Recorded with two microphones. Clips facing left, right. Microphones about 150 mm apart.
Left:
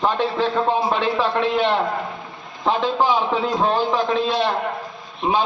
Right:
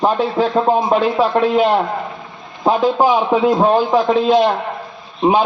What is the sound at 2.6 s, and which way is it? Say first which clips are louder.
Speech: right 5 dB; 45° right (ahead or behind).